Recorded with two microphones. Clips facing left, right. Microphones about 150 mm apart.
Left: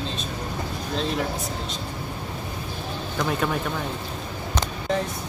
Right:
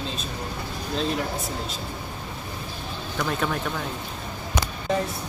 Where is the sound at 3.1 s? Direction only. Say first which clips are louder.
Left 1 dB; centre (ahead or behind).